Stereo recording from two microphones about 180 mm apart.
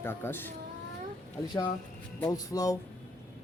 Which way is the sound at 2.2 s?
20° left (ahead or behind).